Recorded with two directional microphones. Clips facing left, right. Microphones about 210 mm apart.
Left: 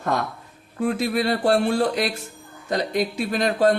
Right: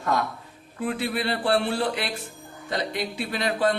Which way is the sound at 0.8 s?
45° left (ahead or behind).